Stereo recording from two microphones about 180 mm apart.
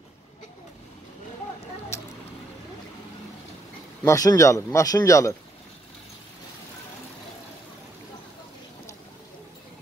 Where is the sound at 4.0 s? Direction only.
20° left (ahead or behind).